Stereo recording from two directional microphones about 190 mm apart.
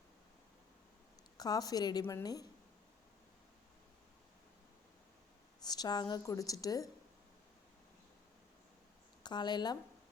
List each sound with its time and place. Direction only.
1.4 s a woman's voice: 20° left (ahead or behind)
5.6 s a woman's voice: 20° left (ahead or behind)
9.2 s a woman's voice: 20° left (ahead or behind)